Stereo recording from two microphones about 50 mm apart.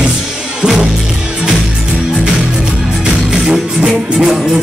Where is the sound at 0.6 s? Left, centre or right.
Centre.